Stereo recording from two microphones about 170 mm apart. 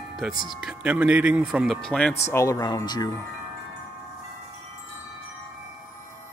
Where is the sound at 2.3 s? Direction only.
20° left (ahead or behind).